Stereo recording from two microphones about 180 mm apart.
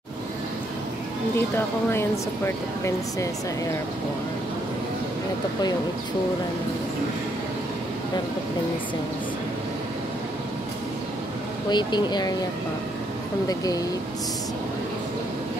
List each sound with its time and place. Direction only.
1.9 s speech: 15° left (ahead or behind)
11.7 s speech: 25° left (ahead or behind)